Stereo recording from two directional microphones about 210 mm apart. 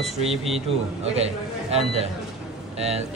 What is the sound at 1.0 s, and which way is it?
Speech, 30° right (ahead or behind).